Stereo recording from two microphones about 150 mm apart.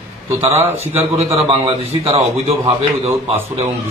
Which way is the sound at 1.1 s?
40° right (ahead or behind).